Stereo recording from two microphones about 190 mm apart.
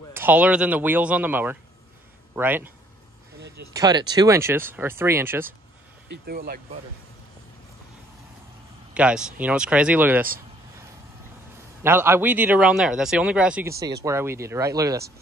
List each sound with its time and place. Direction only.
0.1 s a man's voice: 10° right (ahead or behind)
3.7 s a man's voice: 20° right (ahead or behind)
6.0 s speech: 55° right (ahead or behind)
8.9 s a man's voice: 5° right (ahead or behind)
11.8 s a man's voice: 10° right (ahead or behind)